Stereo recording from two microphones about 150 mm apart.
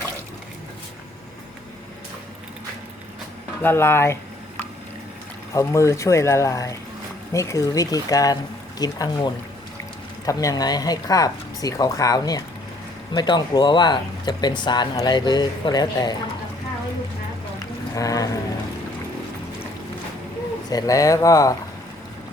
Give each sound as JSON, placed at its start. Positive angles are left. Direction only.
{"t": 3.6, "sound": "speech", "side_deg": 15}
{"t": 5.5, "sound": "speech", "side_deg": 20}
{"t": 17.9, "sound": "boat", "side_deg": 25}
{"t": 20.7, "sound": "speech", "side_deg": 25}